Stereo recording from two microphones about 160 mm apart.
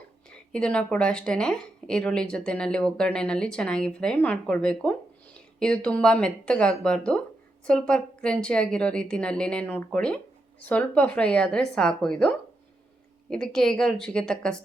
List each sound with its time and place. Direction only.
0.3 s a woman's voice: 5° left (ahead or behind)
13.3 s a woman's voice: 5° left (ahead or behind)